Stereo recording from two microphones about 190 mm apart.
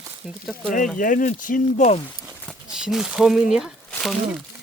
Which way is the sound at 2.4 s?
Centre (ahead or behind).